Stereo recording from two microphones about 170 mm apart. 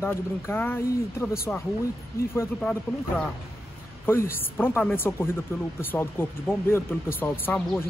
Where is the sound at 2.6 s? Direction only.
5° left (ahead or behind).